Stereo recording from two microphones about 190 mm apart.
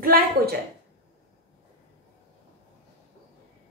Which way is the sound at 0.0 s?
50° right (ahead or behind).